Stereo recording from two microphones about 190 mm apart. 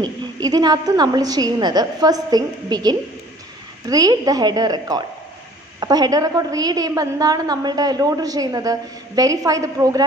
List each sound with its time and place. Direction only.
0.0 s a woman's voice: 20° right (ahead or behind)